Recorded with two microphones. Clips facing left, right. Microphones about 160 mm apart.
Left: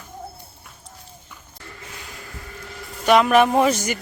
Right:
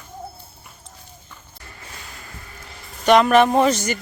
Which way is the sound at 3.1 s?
5° left (ahead or behind).